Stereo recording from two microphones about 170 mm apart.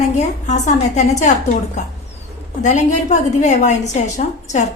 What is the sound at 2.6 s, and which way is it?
A woman's voice, 45° left (ahead or behind).